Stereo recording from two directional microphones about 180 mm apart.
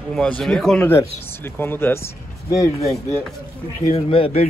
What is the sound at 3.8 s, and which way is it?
Speech, 35° left (ahead or behind).